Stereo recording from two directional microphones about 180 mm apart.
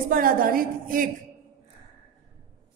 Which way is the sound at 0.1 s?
50° right (ahead or behind).